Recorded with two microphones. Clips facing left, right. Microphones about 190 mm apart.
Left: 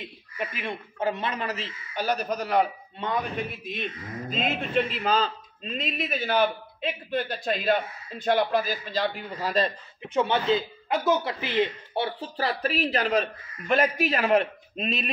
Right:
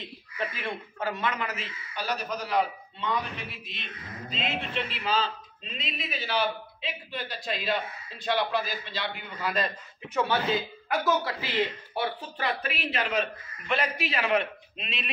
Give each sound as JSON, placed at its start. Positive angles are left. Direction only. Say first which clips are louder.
{"t": 0.4, "sound": "a man's voice", "louder": "left 1 dB", "side_deg": 15}
{"t": 10.1, "sound": "speech", "louder": "left 3 dB", "side_deg": 20}